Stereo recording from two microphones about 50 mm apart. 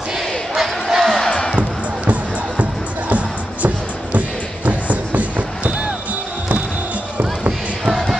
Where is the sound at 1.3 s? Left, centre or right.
Centre.